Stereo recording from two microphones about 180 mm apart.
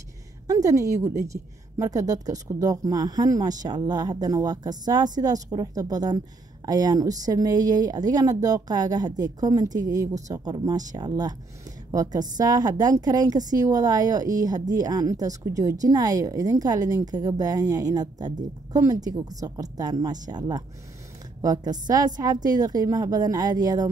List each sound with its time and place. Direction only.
0.5 s speech: 20° right (ahead or behind)